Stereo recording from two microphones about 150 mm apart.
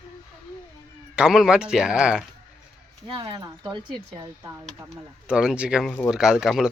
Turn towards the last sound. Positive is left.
turn(degrees=-5)  # may be behind; listen again after turning